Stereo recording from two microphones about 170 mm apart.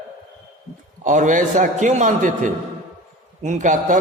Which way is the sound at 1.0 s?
50° right (ahead or behind).